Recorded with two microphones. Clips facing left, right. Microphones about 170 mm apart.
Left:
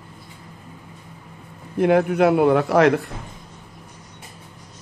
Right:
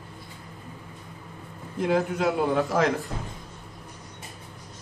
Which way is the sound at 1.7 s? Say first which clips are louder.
Left 7 dB; 65° left (ahead or behind).